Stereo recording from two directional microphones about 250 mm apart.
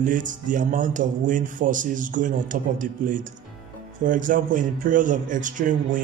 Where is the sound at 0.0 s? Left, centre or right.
Right.